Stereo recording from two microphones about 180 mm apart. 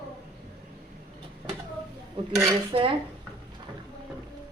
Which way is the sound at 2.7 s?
30° right (ahead or behind).